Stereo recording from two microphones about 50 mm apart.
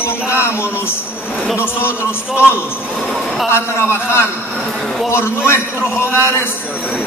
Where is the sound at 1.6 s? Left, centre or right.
Left.